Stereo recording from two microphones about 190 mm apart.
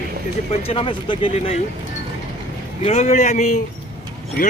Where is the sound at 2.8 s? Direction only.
35° left (ahead or behind).